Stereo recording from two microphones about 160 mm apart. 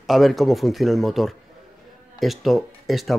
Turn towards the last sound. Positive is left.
turn(degrees=0)  # may be behind; listen again after turning